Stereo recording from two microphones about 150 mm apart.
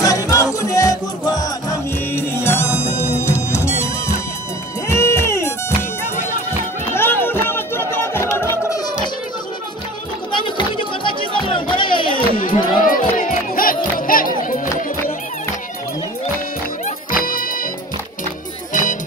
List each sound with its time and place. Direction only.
0.0 s music: 20° left (ahead or behind)
2.1 s music: 15° left (ahead or behind)
4.8 s music: 20° left (ahead or behind)
7.0 s music: 15° left (ahead or behind)
10.3 s music: 35° left (ahead or behind)
12.2 s a sound: 70° left (ahead or behind)
12.8 s music: 65° left (ahead or behind)
16.8 s music: 70° left (ahead or behind)
18.7 s music: 60° left (ahead or behind)